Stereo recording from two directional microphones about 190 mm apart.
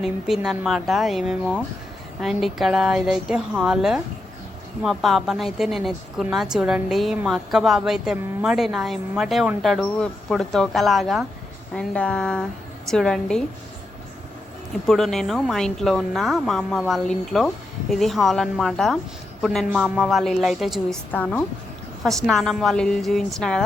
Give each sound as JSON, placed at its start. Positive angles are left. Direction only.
{"t": 0.0, "sound": "a woman's voice", "side_deg": 0}
{"t": 14.8, "sound": "a woman's voice", "side_deg": 0}